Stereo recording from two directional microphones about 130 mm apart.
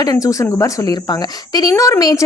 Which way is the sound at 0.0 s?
25° left (ahead or behind).